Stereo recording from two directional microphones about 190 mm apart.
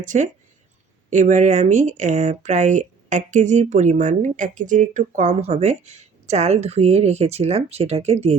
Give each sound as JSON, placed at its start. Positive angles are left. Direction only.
{"t": 0.0, "sound": "speech", "side_deg": -40}